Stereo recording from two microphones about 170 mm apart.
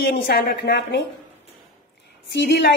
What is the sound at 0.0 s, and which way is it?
Speech, 65° left (ahead or behind).